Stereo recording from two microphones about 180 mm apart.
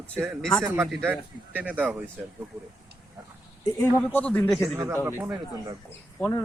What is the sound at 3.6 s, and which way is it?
Speech, 15° left (ahead or behind).